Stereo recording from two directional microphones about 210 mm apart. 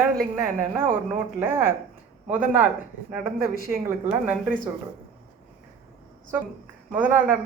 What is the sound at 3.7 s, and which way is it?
Speech, 10° right (ahead or behind).